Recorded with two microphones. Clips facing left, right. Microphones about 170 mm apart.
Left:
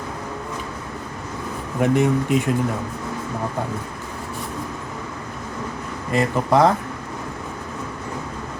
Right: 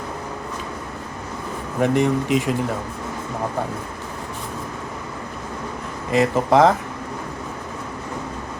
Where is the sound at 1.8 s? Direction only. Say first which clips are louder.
Even; 10° left (ahead or behind).